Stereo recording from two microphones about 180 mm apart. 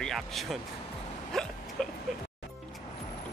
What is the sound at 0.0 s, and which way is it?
Speech, centre (ahead or behind).